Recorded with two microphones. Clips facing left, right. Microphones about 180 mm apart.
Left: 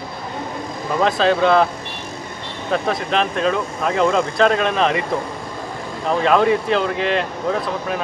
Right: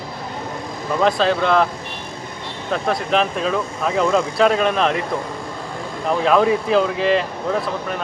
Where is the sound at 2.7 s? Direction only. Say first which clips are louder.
Even; centre (ahead or behind).